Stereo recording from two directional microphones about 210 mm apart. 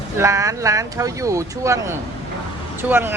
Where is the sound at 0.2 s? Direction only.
15° right (ahead or behind).